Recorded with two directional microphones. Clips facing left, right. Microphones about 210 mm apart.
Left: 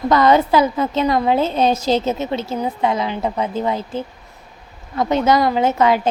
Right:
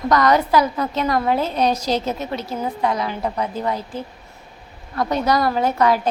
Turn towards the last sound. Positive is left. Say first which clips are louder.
# left 2 dB
turn(degrees=25)  # may be behind; listen again after turning